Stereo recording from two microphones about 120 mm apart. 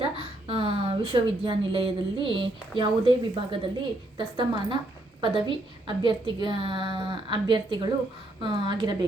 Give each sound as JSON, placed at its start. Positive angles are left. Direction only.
{"t": 0.0, "sound": "a woman's voice", "side_deg": -50}